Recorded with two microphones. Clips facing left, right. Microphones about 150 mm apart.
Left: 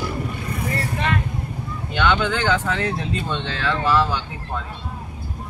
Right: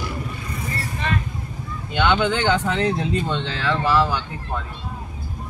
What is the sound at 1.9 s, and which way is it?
Speech, 20° right (ahead or behind).